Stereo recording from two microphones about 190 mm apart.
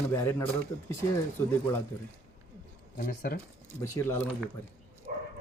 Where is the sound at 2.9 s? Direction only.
50° left (ahead or behind).